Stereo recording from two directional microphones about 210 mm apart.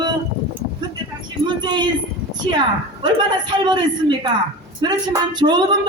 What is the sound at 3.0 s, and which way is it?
A man's voice, 20° right (ahead or behind).